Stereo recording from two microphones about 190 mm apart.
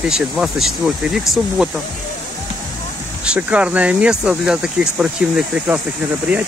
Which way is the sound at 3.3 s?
5° right (ahead or behind).